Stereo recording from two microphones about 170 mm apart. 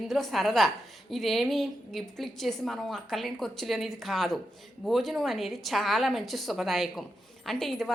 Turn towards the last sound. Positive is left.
turn(degrees=0)  # may be behind; listen again after turning